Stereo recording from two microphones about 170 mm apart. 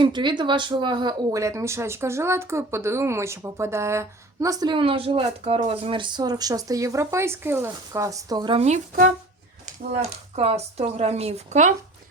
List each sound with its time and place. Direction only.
0.0 s speech: 25° right (ahead or behind)